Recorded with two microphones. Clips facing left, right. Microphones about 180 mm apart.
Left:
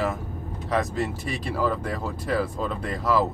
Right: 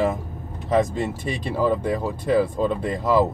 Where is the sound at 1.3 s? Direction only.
20° right (ahead or behind).